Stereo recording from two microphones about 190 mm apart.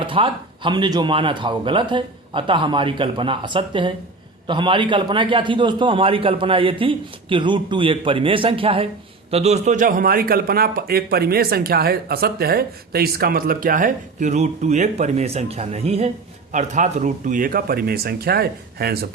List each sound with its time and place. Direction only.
0.0 s a man's voice: 25° right (ahead or behind); by 18.9 s 55° right (ahead or behind)